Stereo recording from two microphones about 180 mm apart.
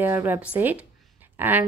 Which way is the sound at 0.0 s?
10° right (ahead or behind).